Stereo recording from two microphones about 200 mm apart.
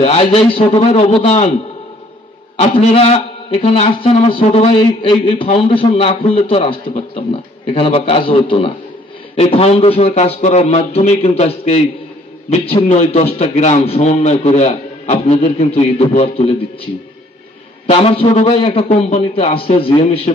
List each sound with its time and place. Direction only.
0.0 s a man's voice: 30° left (ahead or behind)
2.5 s a man's voice: 30° left (ahead or behind)